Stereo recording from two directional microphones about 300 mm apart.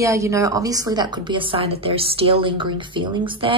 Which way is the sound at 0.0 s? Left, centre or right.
Centre.